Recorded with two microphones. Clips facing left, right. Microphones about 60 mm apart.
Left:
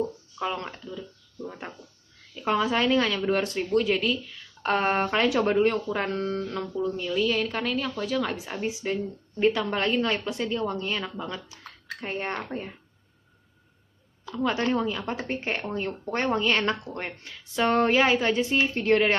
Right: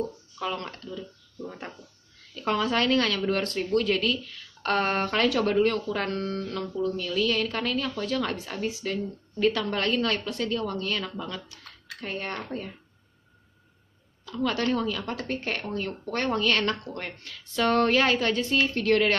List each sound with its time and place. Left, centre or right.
0.4 s speech: left
0.7 s speech: centre
2.3 s speech: centre
8.5 s speech: left
14.4 s speech: left